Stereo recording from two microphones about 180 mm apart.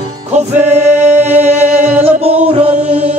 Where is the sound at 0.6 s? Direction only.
40° right (ahead or behind).